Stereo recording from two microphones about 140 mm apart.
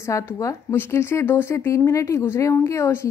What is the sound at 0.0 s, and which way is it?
Speech, 20° left (ahead or behind).